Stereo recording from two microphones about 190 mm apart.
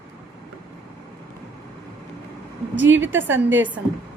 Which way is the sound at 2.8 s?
75° right (ahead or behind).